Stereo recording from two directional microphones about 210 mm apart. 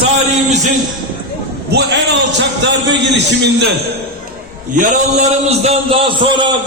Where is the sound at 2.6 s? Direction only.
55° right (ahead or behind).